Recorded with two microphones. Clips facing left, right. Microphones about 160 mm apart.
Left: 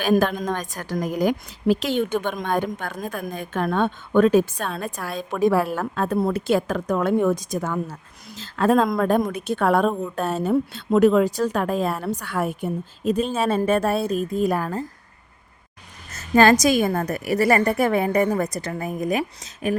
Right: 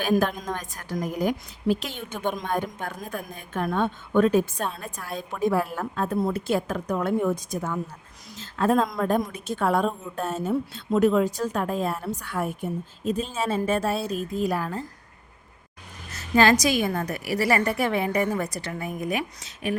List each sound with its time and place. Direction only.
0.0 s a woman's voice: 80° left; by 14.8 s 45° left (ahead or behind)
16.1 s a woman's voice: 45° left (ahead or behind)